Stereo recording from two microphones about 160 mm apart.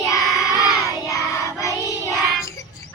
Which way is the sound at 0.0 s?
20° left (ahead or behind).